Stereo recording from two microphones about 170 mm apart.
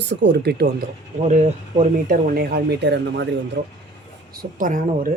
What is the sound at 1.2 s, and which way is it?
Speech, 45° right (ahead or behind).